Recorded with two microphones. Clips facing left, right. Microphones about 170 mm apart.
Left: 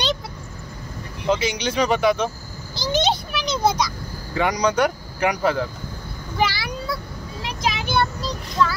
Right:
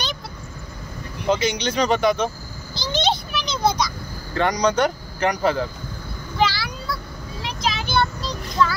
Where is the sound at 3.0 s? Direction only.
10° left (ahead or behind).